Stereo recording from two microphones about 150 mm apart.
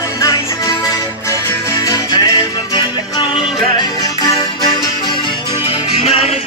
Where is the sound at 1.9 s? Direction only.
25° left (ahead or behind).